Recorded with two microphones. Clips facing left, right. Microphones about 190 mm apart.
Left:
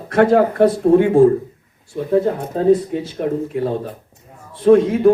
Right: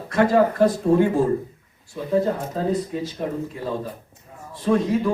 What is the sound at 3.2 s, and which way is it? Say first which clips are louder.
A man's voice: left 8 dB; 60° left (ahead or behind).